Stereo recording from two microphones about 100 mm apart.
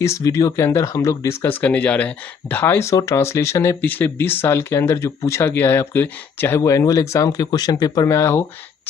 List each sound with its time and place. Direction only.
0.0 s speech: 30° left (ahead or behind)